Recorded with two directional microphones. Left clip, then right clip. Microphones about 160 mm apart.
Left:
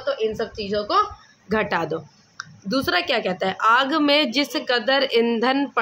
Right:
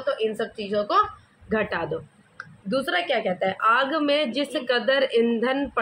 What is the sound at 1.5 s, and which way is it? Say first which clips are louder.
Speech: left 3 dB; 40° left (ahead or behind).